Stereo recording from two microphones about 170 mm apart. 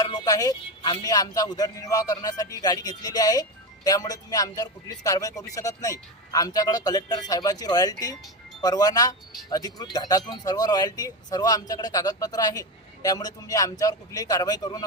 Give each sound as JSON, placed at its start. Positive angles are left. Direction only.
{"t": 0.0, "sound": "a man's voice", "side_deg": 20}